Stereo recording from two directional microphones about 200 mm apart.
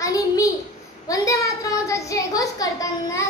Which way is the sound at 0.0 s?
15° left (ahead or behind).